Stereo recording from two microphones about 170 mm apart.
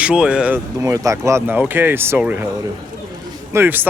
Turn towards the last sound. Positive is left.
turn(degrees=-15)  # may be behind; listen again after turning